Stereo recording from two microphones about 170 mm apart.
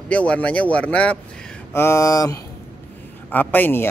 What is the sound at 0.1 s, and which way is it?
A man's voice, 5° left (ahead or behind).